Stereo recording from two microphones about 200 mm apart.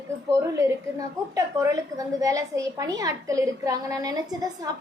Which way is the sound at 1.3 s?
15° right (ahead or behind).